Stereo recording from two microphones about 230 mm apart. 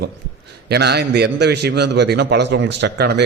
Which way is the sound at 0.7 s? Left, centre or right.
Right.